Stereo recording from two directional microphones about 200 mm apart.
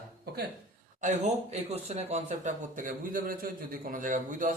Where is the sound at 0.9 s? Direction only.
35° right (ahead or behind).